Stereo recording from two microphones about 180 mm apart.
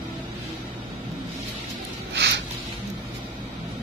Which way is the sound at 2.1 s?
75° right (ahead or behind).